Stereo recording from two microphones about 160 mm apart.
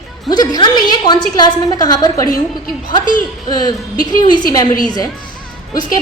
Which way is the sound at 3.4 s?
25° left (ahead or behind).